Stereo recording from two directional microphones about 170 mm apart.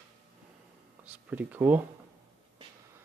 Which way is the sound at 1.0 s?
10° right (ahead or behind).